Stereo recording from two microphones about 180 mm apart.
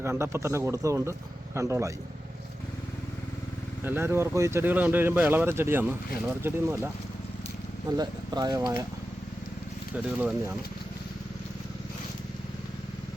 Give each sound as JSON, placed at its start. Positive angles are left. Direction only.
{"t": 0.0, "sound": "speech", "side_deg": -15}
{"t": 3.8, "sound": "speech", "side_deg": -15}
{"t": 7.9, "sound": "speech", "side_deg": -20}
{"t": 9.9, "sound": "speech", "side_deg": -10}